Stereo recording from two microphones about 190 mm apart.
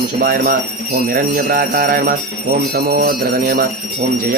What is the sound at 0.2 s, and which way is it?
Music, 50° right (ahead or behind).